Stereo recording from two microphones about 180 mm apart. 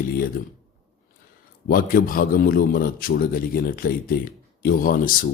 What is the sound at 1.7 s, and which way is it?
Speech, 50° left (ahead or behind).